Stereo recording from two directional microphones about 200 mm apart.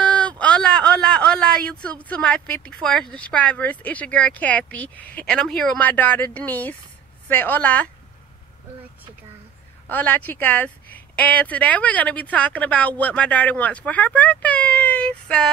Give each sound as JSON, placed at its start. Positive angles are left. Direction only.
{"t": 0.0, "sound": "a sound", "side_deg": 5}
{"t": 0.4, "sound": "speech", "side_deg": 5}
{"t": 9.8, "sound": "speech", "side_deg": 10}